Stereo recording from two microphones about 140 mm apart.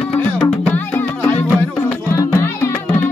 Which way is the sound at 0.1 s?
10° left (ahead or behind).